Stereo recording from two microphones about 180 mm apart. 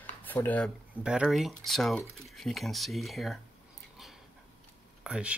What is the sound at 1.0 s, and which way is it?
Speech, 5° right (ahead or behind).